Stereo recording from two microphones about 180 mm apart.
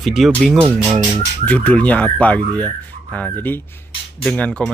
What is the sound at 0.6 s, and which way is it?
Speech, 10° right (ahead or behind).